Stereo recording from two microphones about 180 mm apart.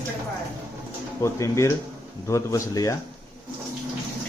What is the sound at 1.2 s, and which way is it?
Speech, 15° left (ahead or behind).